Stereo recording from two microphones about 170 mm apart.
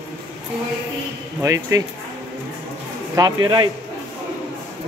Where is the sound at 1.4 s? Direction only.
20° right (ahead or behind).